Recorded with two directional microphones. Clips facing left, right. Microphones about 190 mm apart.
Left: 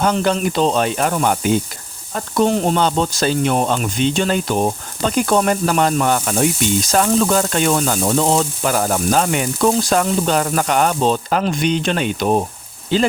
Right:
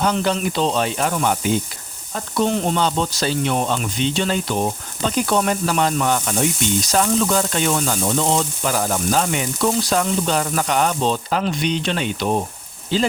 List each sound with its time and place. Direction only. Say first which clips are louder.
0.0 s speech: left 3 dB; 50° left (ahead or behind)